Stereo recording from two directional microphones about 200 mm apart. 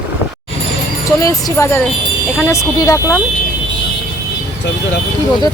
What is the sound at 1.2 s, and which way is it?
Speech, 20° left (ahead or behind).